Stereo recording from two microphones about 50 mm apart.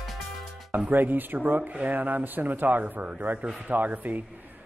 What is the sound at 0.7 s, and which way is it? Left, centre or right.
Speech, right.